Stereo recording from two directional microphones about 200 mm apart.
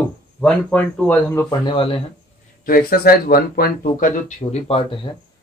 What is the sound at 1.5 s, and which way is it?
Speech, 25° left (ahead or behind).